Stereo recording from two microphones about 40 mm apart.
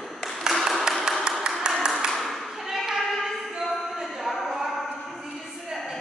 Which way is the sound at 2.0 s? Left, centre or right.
Centre.